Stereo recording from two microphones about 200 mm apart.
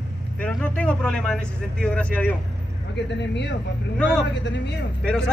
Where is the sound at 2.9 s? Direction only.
60° left (ahead or behind).